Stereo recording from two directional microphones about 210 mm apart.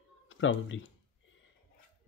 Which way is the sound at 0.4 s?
65° left (ahead or behind).